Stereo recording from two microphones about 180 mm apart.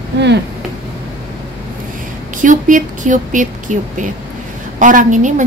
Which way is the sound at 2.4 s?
45° right (ahead or behind).